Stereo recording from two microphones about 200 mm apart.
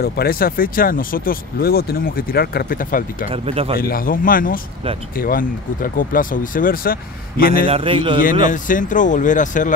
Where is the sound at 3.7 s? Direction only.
45° left (ahead or behind).